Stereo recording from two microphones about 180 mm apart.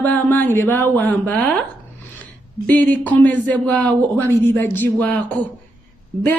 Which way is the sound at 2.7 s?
10° left (ahead or behind).